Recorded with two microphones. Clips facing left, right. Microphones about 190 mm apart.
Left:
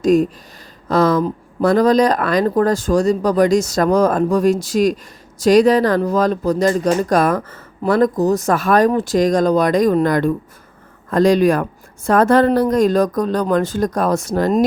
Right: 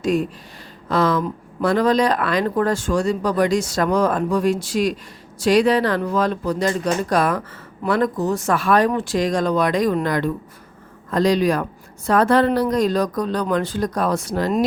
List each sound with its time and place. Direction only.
0.0 s speech: 40° left (ahead or behind)